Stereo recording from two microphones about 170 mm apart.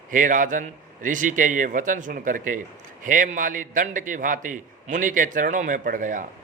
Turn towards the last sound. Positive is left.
turn(degrees=-50)  # may be behind; listen again after turning